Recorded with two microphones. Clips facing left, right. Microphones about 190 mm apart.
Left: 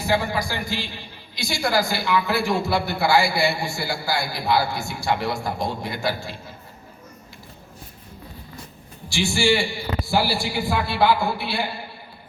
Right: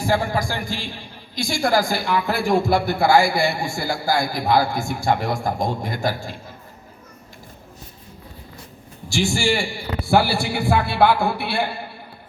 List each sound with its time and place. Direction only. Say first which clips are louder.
0.0 s a woman's voice: right 2 dB; 45° right (ahead or behind)
9.0 s a woman's voice: even; 45° right (ahead or behind)
10.1 s a man's voice: right 5 dB; 55° right (ahead or behind)